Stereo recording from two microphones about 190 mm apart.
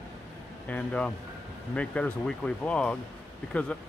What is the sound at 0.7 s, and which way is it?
Speech, 5° left (ahead or behind).